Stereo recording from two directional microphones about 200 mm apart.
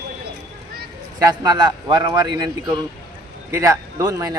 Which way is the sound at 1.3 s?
20° right (ahead or behind).